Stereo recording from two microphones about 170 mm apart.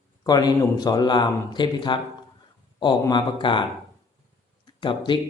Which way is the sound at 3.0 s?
25° left (ahead or behind).